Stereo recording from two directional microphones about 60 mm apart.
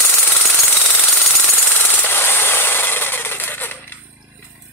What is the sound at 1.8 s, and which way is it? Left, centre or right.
Jackhammer, left.